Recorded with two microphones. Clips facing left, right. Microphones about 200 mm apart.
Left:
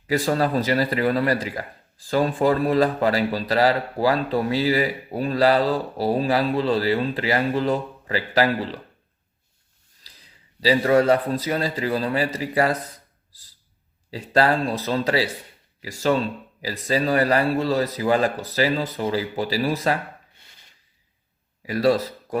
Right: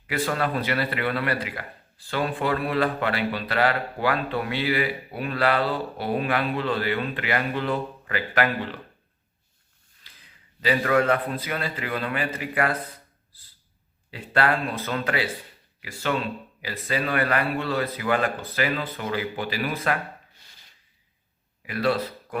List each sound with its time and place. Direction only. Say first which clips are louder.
0.1 s a man's voice: left 5 dB; 40° left (ahead or behind)
10.0 s a man's voice: left 2 dB; 35° left (ahead or behind)
14.1 s a man's voice: left 4 dB; 35° left (ahead or behind)
21.6 s speech: left 5 dB; 35° left (ahead or behind)